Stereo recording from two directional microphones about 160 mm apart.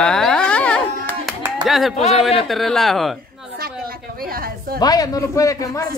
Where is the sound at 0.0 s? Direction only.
5° left (ahead or behind).